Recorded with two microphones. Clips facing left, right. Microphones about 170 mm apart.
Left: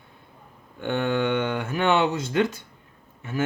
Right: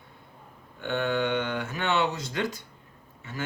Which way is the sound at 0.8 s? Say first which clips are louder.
Left 3 dB; 55° left (ahead or behind).